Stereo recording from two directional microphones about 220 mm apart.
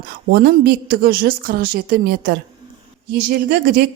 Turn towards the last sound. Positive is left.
turn(degrees=-45)  # may be behind; listen again after turning